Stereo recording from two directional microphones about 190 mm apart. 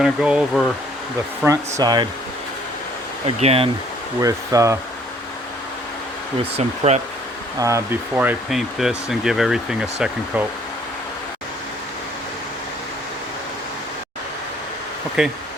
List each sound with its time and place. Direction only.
0.0 s speech: 5° right (ahead or behind)
1.5 s speech: 20° right (ahead or behind)
3.2 s speech: 30° right (ahead or behind)
4.2 s speech: 15° right (ahead or behind)
6.4 s speech: 35° right (ahead or behind)
7.6 s speech: 15° right (ahead or behind)
15.2 s speech: 5° right (ahead or behind)